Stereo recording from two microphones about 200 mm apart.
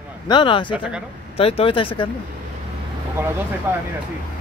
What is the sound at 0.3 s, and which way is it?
Speech, 25° left (ahead or behind).